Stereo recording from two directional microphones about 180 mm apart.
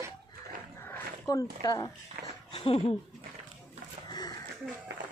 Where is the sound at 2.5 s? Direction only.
30° left (ahead or behind).